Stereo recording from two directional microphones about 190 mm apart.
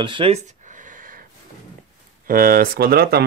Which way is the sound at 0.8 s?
45° right (ahead or behind).